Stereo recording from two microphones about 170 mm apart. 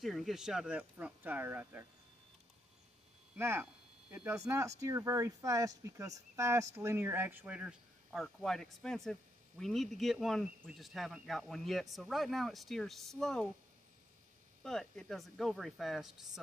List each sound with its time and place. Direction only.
0.0 s speech: centre (ahead or behind)
3.3 s speech: 15° right (ahead or behind); by 13.5 s 5° left (ahead or behind)
14.6 s speech: 5° left (ahead or behind)